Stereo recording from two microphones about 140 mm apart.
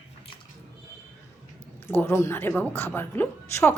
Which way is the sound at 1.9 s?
20° left (ahead or behind).